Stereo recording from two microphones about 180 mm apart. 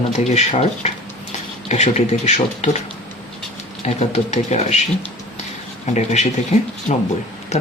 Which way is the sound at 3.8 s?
40° left (ahead or behind).